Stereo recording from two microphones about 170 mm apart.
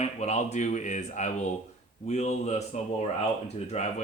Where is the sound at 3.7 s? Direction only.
40° left (ahead or behind).